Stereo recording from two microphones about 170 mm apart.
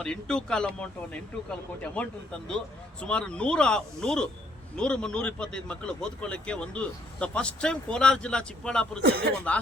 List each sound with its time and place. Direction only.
0.0 s speech: 5° left (ahead or behind)
9.0 s speech: 65° right (ahead or behind)